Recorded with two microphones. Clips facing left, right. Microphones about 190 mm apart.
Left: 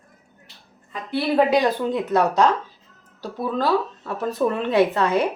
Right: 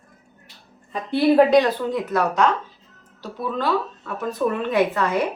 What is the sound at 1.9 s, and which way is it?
Speech, 30° left (ahead or behind).